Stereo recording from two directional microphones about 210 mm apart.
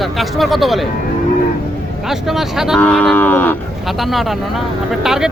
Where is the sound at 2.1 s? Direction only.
Centre (ahead or behind).